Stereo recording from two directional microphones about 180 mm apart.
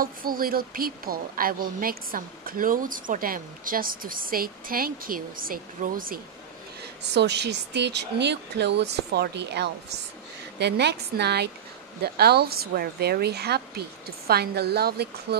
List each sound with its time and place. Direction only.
0.0 s speech: 55° right (ahead or behind)
7.0 s speech: 70° right (ahead or behind)